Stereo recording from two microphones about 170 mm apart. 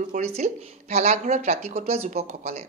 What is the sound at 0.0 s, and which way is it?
A woman's voice, 45° right (ahead or behind).